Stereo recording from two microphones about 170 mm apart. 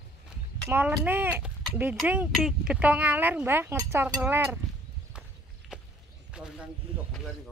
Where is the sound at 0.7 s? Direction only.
10° right (ahead or behind).